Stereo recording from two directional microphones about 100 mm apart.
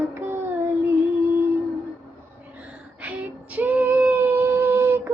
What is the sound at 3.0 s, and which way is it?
Female singing, 15° right (ahead or behind).